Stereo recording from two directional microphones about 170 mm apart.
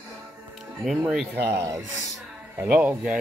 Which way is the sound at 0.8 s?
5° right (ahead or behind).